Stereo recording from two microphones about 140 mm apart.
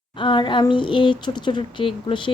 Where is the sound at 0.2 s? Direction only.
35° left (ahead or behind).